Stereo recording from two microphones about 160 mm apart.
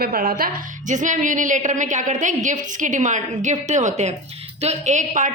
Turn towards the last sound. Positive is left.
turn(degrees=-50)  # may be behind; listen again after turning